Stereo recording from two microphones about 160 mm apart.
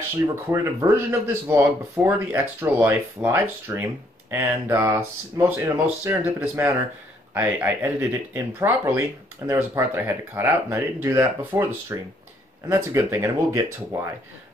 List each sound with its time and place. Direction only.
0.5 s speech: 15° right (ahead or behind)